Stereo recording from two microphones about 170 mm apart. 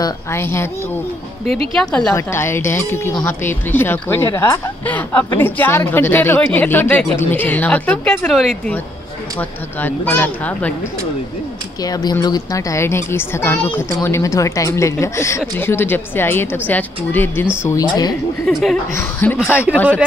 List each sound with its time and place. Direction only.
0.0 s a woman's voice: 15° left (ahead or behind)
1.8 s a woman's voice: 5° left (ahead or behind)
2.1 s a woman's voice: 15° left (ahead or behind); by 8.7 s centre (ahead or behind)
9.4 s a woman's voice: 10° left (ahead or behind)
11.8 s a woman's voice: 25° left (ahead or behind)
18.5 s a woman's voice: centre (ahead or behind)
18.9 s a woman's voice: 10° left (ahead or behind)